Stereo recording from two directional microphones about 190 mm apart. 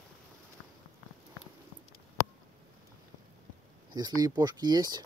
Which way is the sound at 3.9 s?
20° right (ahead or behind).